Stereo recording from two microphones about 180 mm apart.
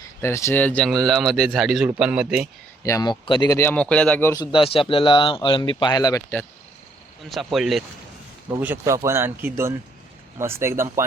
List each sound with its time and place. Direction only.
0.2 s a man's voice: 15° left (ahead or behind); by 2.5 s 5° right (ahead or behind)
2.8 s speech: 20° left (ahead or behind)
4.5 s speech: 30° left (ahead or behind)
7.3 s a man's voice: centre (ahead or behind)
8.4 s speech: 15° right (ahead or behind)